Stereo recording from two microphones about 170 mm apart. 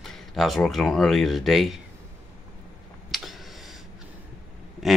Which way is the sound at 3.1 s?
Centre (ahead or behind).